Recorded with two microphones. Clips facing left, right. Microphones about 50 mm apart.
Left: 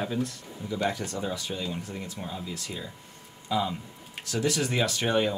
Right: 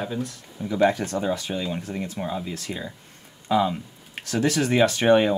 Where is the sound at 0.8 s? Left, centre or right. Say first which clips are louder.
Right 9 dB; right.